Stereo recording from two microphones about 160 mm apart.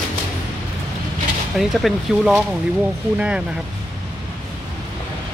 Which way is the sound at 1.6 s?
Centre (ahead or behind).